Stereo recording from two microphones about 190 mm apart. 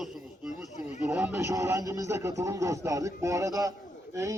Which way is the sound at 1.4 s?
15° right (ahead or behind).